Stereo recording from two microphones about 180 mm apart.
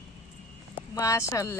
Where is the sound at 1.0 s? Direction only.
15° left (ahead or behind).